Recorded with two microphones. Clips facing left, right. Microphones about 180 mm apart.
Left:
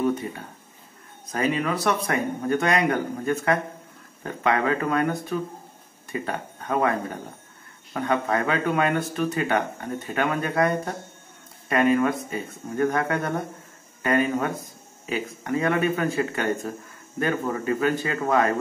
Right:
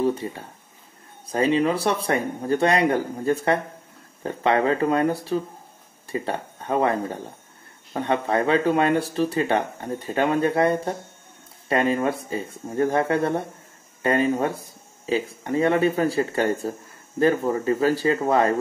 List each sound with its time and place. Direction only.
0.0 s speech: 30° right (ahead or behind)